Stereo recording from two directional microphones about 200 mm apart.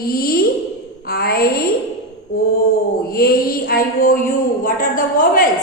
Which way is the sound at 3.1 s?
50° left (ahead or behind).